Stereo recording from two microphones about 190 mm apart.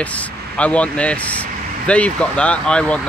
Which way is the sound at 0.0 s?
5° left (ahead or behind).